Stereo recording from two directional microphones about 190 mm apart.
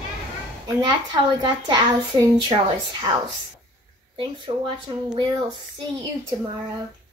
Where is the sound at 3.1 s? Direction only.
20° right (ahead or behind).